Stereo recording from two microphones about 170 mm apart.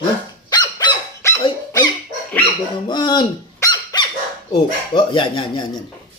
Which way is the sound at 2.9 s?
25° left (ahead or behind).